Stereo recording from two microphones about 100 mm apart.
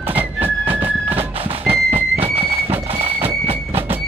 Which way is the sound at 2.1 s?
75° right (ahead or behind).